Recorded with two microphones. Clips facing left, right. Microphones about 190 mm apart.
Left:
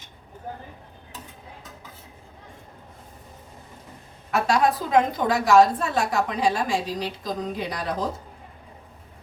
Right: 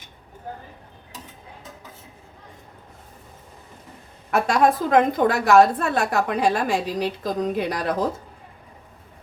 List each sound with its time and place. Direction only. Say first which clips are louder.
4.3 s a woman's voice: right 2 dB; 50° right (ahead or behind)